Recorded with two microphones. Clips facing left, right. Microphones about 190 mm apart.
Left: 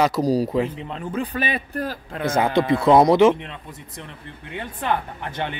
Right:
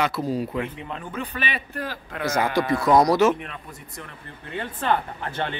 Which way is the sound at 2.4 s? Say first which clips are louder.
Left 4 dB; 25° left (ahead or behind).